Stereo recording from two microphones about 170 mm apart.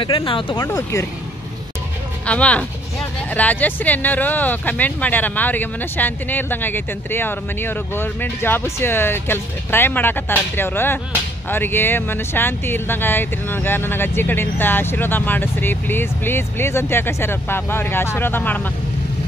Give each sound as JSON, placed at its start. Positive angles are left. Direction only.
{"t": 0.0, "sound": "speech", "side_deg": 30}
{"t": 0.7, "sound": "speech", "side_deg": 15}
{"t": 2.2, "sound": "speech", "side_deg": 10}